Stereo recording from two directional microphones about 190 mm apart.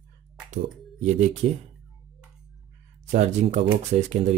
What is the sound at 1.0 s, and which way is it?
Speech, 40° right (ahead or behind).